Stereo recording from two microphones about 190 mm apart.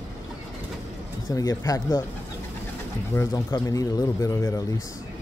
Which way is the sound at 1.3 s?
20° left (ahead or behind).